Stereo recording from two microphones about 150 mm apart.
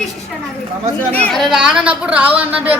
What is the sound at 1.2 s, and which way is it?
A woman's voice, centre (ahead or behind).